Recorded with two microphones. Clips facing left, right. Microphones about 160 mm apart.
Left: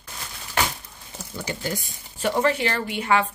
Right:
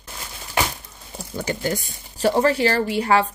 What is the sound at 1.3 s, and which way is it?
Speech, 50° right (ahead or behind).